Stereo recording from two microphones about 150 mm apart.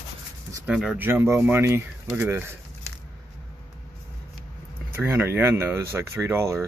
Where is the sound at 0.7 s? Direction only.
5° right (ahead or behind).